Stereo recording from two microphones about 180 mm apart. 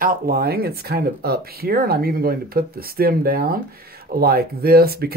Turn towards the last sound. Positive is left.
turn(degrees=-60)  # may be behind; listen again after turning